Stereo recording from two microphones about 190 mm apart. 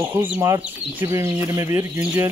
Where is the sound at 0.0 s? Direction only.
15° right (ahead or behind).